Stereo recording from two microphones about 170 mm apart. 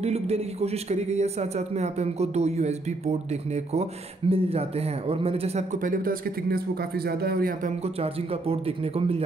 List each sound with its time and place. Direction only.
0.0 s a man's voice: 40° right (ahead or behind); by 7.7 s 60° right (ahead or behind)
7.8 s a man's voice: 35° right (ahead or behind)